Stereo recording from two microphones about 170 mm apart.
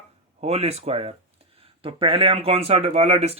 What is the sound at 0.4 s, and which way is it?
Speech, 35° right (ahead or behind).